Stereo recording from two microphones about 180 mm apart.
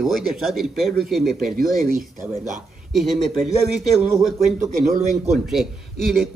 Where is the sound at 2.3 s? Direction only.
40° right (ahead or behind).